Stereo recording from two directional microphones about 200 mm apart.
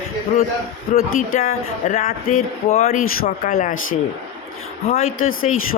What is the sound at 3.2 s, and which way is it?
Speech, 45° left (ahead or behind).